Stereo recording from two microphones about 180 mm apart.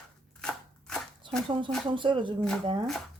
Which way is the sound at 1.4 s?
25° right (ahead or behind).